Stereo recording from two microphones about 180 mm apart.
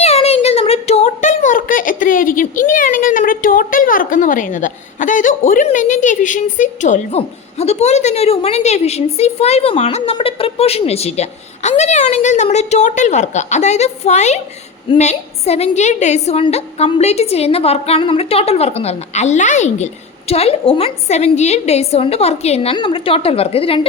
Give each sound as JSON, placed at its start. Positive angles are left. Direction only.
{"t": 0.0, "sound": "a woman's voice", "side_deg": 35}